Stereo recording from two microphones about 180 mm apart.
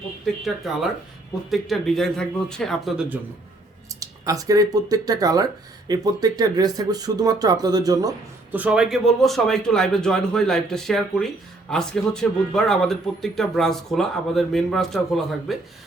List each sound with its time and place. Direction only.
0.4 s a man's voice: centre (ahead or behind)
4.0 s speech: 20° right (ahead or behind)
8.5 s a man's voice: 5° right (ahead or behind)